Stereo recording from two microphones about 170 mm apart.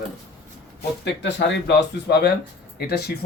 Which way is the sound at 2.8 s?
70° left (ahead or behind).